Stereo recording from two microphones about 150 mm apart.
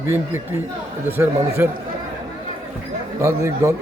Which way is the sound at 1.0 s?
15° right (ahead or behind).